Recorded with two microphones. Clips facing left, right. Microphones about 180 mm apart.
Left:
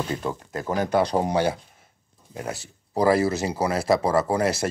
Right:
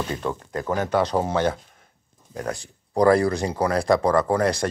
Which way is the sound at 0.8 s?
10° left (ahead or behind).